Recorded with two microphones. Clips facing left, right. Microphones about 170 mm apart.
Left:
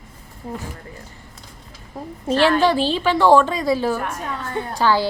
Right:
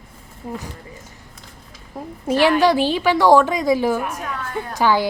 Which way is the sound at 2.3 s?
10° right (ahead or behind).